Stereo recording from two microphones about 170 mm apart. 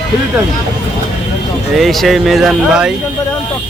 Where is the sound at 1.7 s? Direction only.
Centre (ahead or behind).